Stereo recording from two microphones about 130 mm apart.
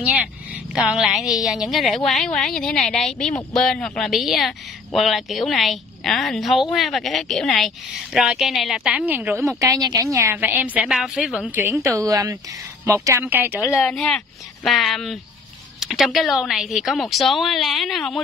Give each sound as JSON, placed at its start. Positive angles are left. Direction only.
{"t": 0.7, "sound": "a woman's voice", "side_deg": -5}
{"t": 13.6, "sound": "speech", "side_deg": 20}
{"t": 13.8, "sound": "a woman's voice", "side_deg": 5}